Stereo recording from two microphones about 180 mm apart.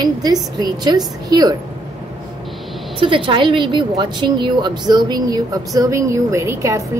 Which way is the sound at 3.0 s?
30° right (ahead or behind).